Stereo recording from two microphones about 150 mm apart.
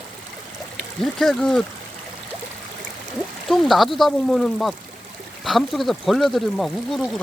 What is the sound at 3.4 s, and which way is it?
Speech, centre (ahead or behind).